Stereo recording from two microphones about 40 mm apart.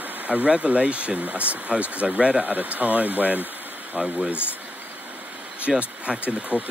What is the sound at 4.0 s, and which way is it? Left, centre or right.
Speech, right.